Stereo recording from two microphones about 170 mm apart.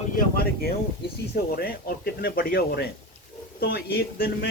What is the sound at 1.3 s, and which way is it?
Speech, 60° left (ahead or behind).